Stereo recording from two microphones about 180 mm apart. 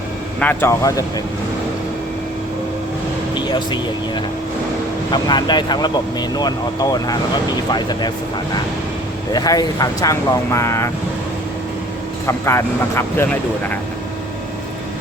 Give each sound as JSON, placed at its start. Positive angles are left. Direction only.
{"t": 0.3, "sound": "speech", "side_deg": 10}
{"t": 3.3, "sound": "speech", "side_deg": 25}
{"t": 7.7, "sound": "speech", "side_deg": 25}
{"t": 9.3, "sound": "speech", "side_deg": 20}
{"t": 12.2, "sound": "speech", "side_deg": 15}